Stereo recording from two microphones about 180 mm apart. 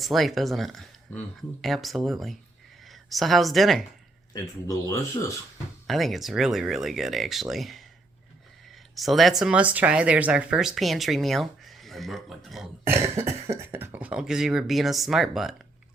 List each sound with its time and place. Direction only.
0.0 s a woman's voice: centre (ahead or behind)
4.6 s speech: 20° left (ahead or behind)
5.9 s speech: centre (ahead or behind)
9.0 s speech: centre (ahead or behind)
12.8 s speech: 15° right (ahead or behind)